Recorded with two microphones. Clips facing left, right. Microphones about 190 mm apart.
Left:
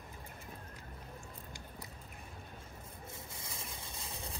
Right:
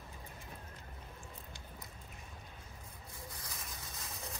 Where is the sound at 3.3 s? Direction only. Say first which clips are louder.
Left 1 dB; 25° left (ahead or behind).